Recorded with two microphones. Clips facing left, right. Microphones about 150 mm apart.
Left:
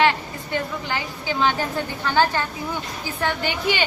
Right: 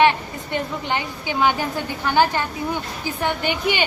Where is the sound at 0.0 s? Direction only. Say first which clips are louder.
Right 3 dB; 20° right (ahead or behind).